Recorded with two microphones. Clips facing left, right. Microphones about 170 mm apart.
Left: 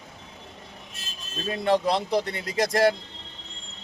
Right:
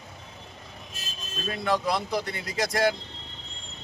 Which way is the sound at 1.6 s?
25° left (ahead or behind).